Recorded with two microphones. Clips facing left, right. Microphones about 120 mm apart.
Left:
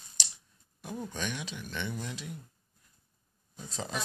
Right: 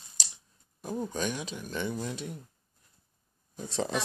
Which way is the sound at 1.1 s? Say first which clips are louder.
Right 4 dB; 40° right (ahead or behind).